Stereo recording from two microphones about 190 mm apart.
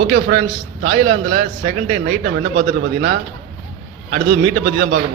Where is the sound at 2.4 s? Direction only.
60° right (ahead or behind).